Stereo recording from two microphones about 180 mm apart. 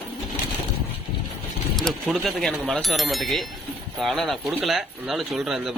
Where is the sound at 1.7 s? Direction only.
Centre (ahead or behind).